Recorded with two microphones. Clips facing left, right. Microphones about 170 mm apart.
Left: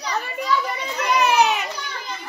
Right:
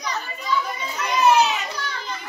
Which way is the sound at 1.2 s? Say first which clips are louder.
Right 1 dB; 65° left (ahead or behind).